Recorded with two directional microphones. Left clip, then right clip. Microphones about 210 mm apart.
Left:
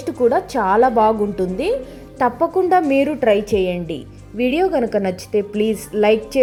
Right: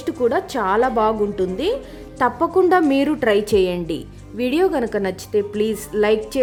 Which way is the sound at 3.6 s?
15° right (ahead or behind).